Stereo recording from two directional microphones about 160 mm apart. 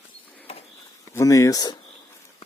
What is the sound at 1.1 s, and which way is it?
Speech, 20° left (ahead or behind).